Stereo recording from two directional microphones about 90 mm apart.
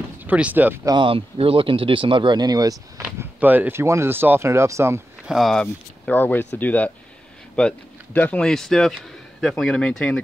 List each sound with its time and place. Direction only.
0.2 s speech: 20° right (ahead or behind)
0.9 s speech: 80° right; by 2.8 s 45° right (ahead or behind)
3.3 s speech: 20° right (ahead or behind)
5.2 s speech: centre (ahead or behind)
6.0 s speech: 20° left (ahead or behind)
8.4 s speech: 5° left (ahead or behind)